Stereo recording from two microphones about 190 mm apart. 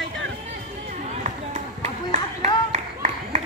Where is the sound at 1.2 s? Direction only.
40° right (ahead or behind).